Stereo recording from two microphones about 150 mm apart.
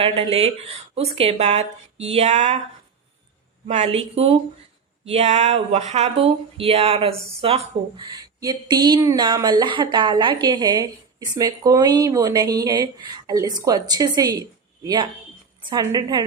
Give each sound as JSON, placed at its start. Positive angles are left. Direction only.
{"t": 0.0, "sound": "a woman's voice", "side_deg": -40}
{"t": 3.7, "sound": "a woman's voice", "side_deg": -45}